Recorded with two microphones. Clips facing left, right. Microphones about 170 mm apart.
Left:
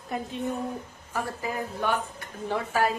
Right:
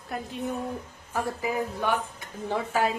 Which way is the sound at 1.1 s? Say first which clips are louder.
Right 3 dB; 15° right (ahead or behind).